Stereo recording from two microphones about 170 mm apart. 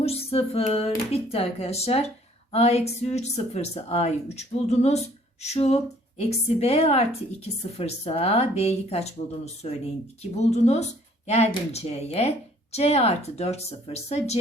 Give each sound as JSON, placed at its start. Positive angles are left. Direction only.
{"t": 0.0, "sound": "a woman's voice", "side_deg": 35}